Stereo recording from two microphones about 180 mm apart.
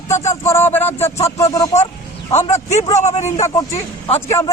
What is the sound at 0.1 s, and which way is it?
Speech, 15° left (ahead or behind).